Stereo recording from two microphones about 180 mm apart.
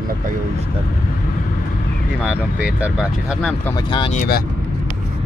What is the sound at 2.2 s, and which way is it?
Speech, 10° right (ahead or behind).